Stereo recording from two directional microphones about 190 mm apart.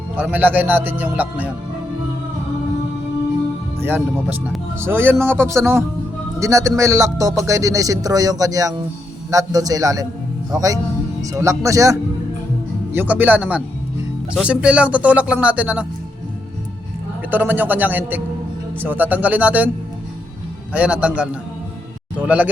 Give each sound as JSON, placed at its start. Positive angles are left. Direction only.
{"t": 0.2, "sound": "speech", "side_deg": -10}
{"t": 3.8, "sound": "speech", "side_deg": -10}
{"t": 17.3, "sound": "speech", "side_deg": -10}
{"t": 20.7, "sound": "speech", "side_deg": -5}